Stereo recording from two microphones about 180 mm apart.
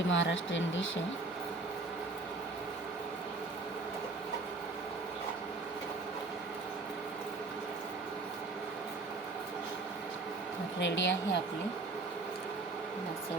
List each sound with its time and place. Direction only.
0.1 s speech: 90° left
10.8 s speech: 90° left